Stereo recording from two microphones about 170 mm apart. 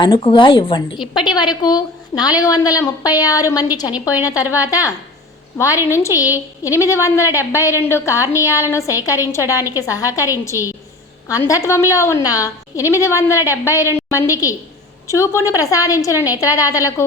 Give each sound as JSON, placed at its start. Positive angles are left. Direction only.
{"t": 0.0, "sound": "a woman's voice", "side_deg": 30}
{"t": 4.7, "sound": "a woman's voice", "side_deg": 20}